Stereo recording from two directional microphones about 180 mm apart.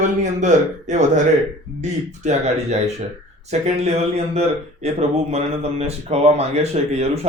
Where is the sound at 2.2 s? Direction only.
40° right (ahead or behind).